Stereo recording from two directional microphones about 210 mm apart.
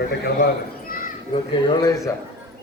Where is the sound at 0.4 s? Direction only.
40° left (ahead or behind).